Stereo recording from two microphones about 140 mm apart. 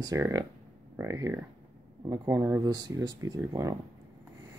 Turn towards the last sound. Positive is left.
turn(degrees=-25)  # may be behind; listen again after turning